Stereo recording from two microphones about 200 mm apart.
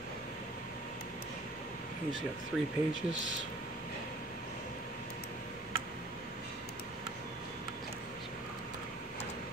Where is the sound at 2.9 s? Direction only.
70° right (ahead or behind).